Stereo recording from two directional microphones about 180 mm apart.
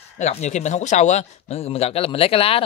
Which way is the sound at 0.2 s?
40° left (ahead or behind).